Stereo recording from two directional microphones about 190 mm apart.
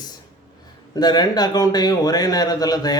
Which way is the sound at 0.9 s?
20° left (ahead or behind).